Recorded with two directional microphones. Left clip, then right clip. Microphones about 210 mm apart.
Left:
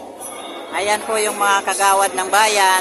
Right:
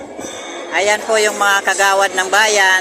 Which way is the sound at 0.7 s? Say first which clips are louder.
Right 5 dB; 5° right (ahead or behind).